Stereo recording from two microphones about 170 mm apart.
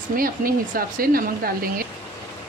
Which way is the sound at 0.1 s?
55° right (ahead or behind).